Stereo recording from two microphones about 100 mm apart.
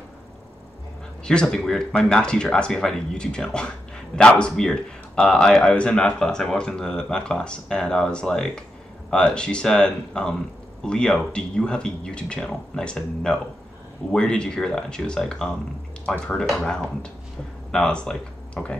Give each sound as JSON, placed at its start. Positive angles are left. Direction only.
{"t": 1.2, "sound": "speech", "side_deg": 10}